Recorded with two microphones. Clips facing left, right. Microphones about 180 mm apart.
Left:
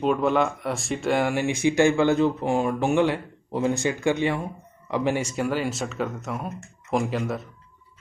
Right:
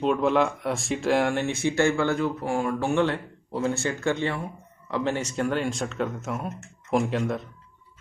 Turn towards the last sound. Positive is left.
turn(degrees=0)  # may be behind; listen again after turning